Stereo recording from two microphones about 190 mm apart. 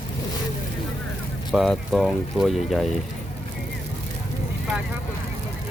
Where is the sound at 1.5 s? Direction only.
Centre (ahead or behind).